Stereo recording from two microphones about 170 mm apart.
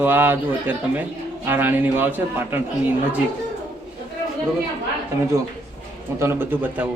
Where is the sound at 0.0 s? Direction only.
10° right (ahead or behind).